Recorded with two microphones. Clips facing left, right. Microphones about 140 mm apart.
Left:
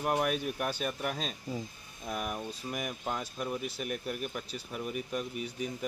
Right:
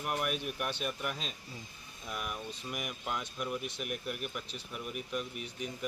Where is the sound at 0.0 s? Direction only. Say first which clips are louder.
Left 5 dB; 35° left (ahead or behind).